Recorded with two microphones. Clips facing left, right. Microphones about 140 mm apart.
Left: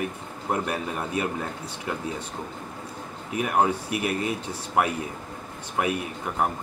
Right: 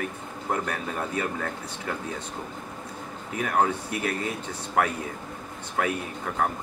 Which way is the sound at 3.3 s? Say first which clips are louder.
Left 1 dB; 15° left (ahead or behind).